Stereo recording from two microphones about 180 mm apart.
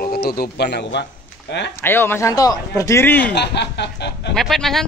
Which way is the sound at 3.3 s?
70° left (ahead or behind).